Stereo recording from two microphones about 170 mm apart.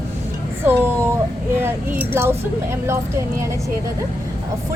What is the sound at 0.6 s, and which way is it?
A woman's voice, 10° right (ahead or behind).